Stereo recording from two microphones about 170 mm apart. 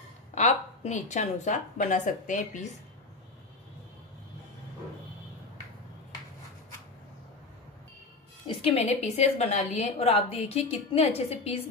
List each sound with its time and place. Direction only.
0.3 s a woman's voice: 40° left (ahead or behind)
8.5 s a woman's voice: 40° left (ahead or behind)